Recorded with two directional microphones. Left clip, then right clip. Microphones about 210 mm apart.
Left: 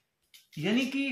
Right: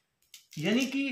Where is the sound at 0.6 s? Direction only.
5° right (ahead or behind).